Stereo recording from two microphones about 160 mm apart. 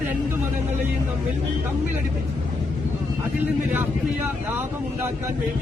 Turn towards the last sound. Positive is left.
turn(degrees=-15)  # may be behind; listen again after turning